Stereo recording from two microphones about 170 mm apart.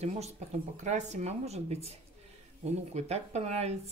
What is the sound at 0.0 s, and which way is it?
Speech, 40° right (ahead or behind).